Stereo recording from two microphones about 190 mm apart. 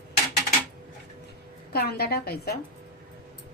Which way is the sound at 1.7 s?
55° left (ahead or behind).